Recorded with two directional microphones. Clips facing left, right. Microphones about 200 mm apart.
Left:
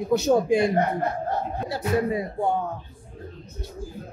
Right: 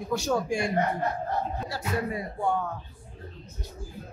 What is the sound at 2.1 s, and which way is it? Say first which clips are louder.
Speech: left 4 dB; 20° left (ahead or behind).